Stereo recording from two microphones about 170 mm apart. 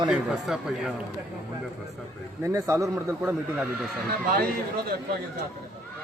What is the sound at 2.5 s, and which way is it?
Speech, 20° right (ahead or behind).